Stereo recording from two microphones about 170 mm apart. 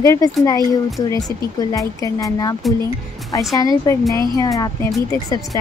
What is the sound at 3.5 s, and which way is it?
Speech, 20° left (ahead or behind).